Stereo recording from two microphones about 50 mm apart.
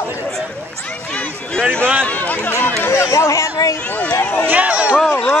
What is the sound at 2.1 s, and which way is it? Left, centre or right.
Run, left.